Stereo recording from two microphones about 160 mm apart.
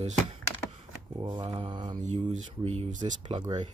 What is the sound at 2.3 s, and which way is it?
Speech, 40° right (ahead or behind).